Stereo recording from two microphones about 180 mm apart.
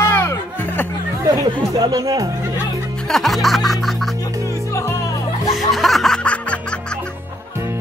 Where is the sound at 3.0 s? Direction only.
Centre (ahead or behind).